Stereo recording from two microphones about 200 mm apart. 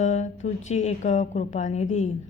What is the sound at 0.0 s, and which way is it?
A woman's voice, 35° left (ahead or behind).